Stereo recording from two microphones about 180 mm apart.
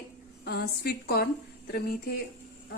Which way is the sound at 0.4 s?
60° left (ahead or behind).